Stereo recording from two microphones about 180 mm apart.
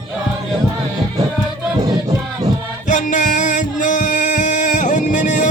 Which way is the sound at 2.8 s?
45° left (ahead or behind).